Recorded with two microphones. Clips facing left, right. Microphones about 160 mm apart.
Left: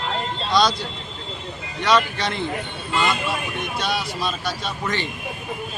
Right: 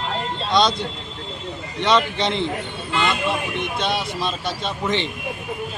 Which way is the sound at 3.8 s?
25° right (ahead or behind).